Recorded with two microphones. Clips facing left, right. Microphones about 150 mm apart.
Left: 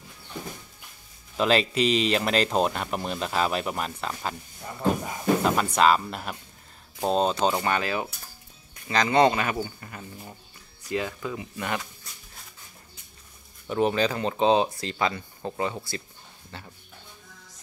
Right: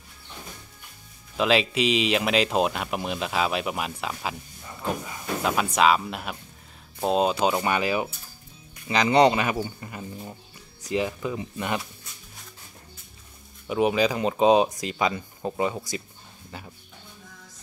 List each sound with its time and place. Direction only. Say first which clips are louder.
1.3 s speech: even; centre (ahead or behind)
5.4 s speech: right 3 dB; centre (ahead or behind); by 11.9 s 20° right (ahead or behind)
13.7 s speech: right 2 dB; 10° right (ahead or behind)